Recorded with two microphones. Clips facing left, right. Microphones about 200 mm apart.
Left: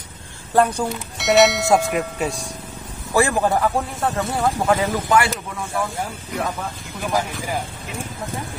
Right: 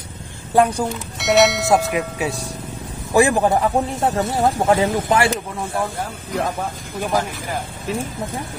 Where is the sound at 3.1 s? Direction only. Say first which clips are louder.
Right 3 dB; 15° right (ahead or behind).